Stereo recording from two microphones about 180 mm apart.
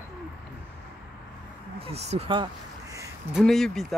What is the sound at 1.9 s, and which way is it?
Speech, 35° right (ahead or behind).